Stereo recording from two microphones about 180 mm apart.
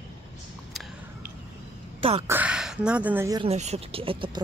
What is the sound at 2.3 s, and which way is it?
Speech, 10° right (ahead or behind).